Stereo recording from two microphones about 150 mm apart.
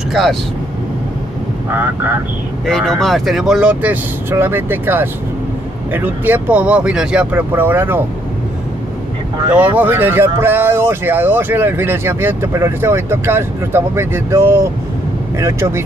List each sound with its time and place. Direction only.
0.1 s speech: centre (ahead or behind)
1.7 s speech: 10° right (ahead or behind)
2.6 s speech: centre (ahead or behind); by 8.0 s 15° right (ahead or behind)
9.8 s speech: 15° right (ahead or behind)